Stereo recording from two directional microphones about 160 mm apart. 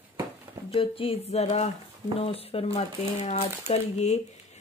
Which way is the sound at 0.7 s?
35° left (ahead or behind).